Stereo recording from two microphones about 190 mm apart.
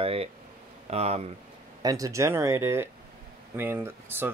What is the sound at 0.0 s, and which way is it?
Speech, 30° right (ahead or behind).